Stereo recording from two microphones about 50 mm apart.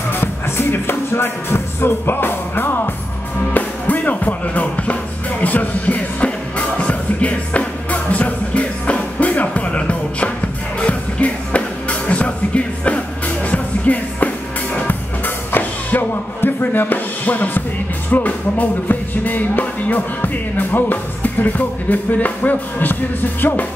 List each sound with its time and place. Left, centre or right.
0.1 s music: left
3.5 s music: left